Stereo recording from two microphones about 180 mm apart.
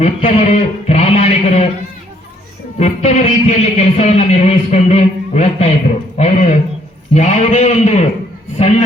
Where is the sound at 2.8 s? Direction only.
40° left (ahead or behind).